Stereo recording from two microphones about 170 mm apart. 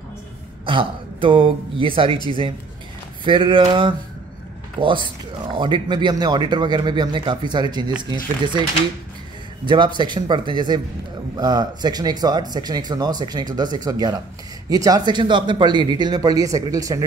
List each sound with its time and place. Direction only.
0.7 s speech: 30° right (ahead or behind)
9.7 s speech: 25° right (ahead or behind)